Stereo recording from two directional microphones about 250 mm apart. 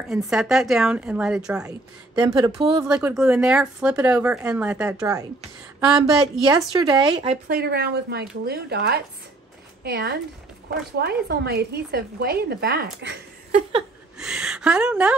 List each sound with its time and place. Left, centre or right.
0.1 s speech: centre
2.1 s speech: centre
2.8 s speech: centre
6.7 s speech: centre
7.4 s a woman's voice: right
13.5 s a sound: right
14.1 s speech: centre